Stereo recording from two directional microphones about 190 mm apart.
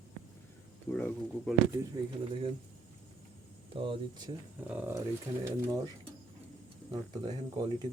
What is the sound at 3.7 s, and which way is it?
Speech, 25° right (ahead or behind).